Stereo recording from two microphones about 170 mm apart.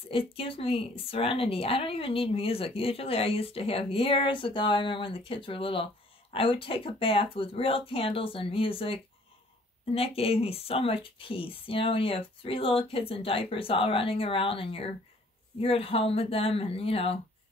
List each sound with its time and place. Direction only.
0.1 s a woman's voice: 35° left (ahead or behind)